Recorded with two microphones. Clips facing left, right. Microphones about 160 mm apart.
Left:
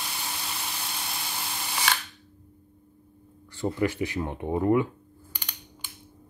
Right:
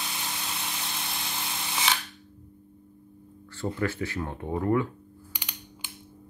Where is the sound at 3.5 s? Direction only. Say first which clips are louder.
Left 3 dB; 15° left (ahead or behind).